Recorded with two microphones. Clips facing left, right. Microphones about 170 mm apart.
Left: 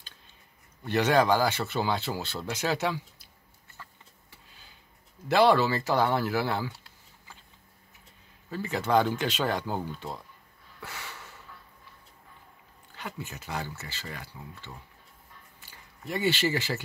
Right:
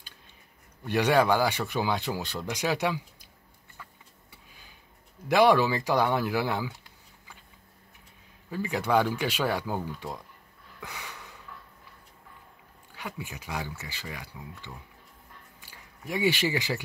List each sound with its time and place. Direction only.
0.8 s speech: 10° right (ahead or behind)
5.3 s speech: 10° right (ahead or behind)
8.5 s speech: 10° right (ahead or behind)
10.8 s snort: 15° right (ahead or behind)
12.9 s speech: 10° right (ahead or behind)